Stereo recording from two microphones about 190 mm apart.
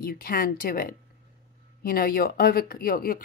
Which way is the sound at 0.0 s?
50° left (ahead or behind).